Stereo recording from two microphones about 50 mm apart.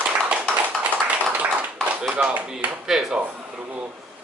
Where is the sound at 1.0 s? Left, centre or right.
Right.